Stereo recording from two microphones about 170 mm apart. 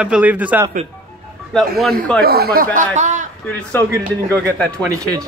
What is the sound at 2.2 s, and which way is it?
Speech, 65° right (ahead or behind).